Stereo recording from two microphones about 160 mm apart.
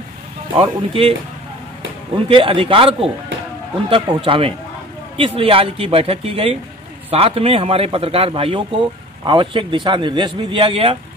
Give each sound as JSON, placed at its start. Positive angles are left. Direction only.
{"t": 0.6, "sound": "a man's voice", "side_deg": -35}
{"t": 2.2, "sound": "a man's voice", "side_deg": -35}